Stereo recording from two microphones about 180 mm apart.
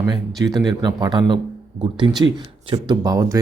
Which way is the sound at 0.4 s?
20° right (ahead or behind).